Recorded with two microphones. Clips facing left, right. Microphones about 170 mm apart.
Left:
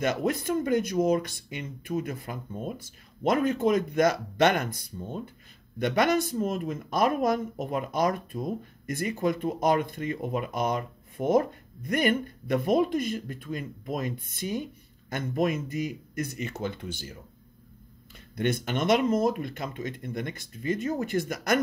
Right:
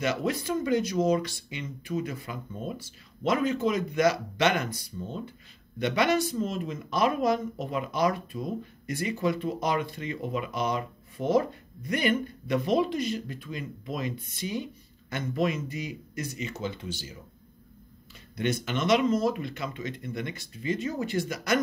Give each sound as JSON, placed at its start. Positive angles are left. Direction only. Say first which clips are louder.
{"t": 0.0, "sound": "speech", "louder": "left 1 dB", "side_deg": 50}
{"t": 18.3, "sound": "speech", "louder": "left 1 dB", "side_deg": 50}